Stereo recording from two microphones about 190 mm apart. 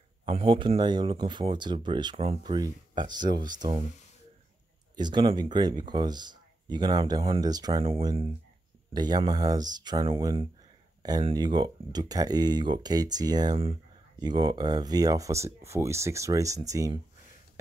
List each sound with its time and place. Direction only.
0.2 s speech: 30° right (ahead or behind)
4.9 s speech: 25° right (ahead or behind)